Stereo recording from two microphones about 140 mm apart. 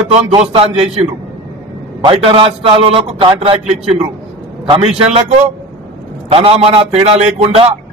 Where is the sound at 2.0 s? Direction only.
40° right (ahead or behind).